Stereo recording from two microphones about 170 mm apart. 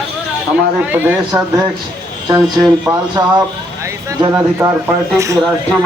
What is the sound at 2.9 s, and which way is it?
A man's voice, 20° right (ahead or behind).